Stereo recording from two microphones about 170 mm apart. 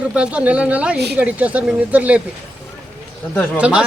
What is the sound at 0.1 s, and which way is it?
Speech, 5° right (ahead or behind).